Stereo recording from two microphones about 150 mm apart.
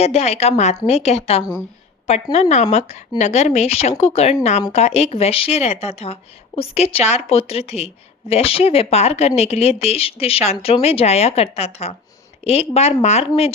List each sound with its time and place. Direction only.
0.0 s speech: 45° left (ahead or behind)